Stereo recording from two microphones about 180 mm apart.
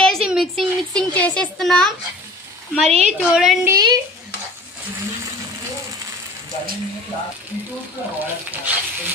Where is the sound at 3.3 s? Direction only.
Centre (ahead or behind).